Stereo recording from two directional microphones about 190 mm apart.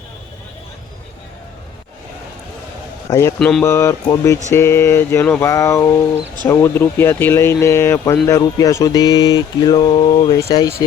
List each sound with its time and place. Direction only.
3.1 s a man's voice: 20° left (ahead or behind)
3.3 s speech: 5° left (ahead or behind)
3.6 s speech: 15° left (ahead or behind)